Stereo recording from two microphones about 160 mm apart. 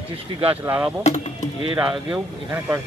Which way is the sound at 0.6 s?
10° right (ahead or behind).